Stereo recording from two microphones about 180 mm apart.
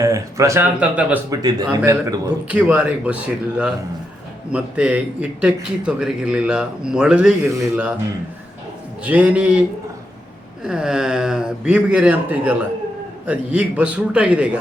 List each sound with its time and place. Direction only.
0.0 s a man's voice: 15° right (ahead or behind)
1.3 s a man's voice: 20° right (ahead or behind)
4.5 s a man's voice: 5° right (ahead or behind)
9.0 s a man's voice: 10° right (ahead or behind)